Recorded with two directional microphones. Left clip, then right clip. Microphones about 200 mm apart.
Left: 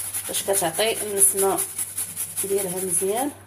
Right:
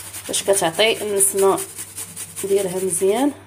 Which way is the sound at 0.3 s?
30° right (ahead or behind).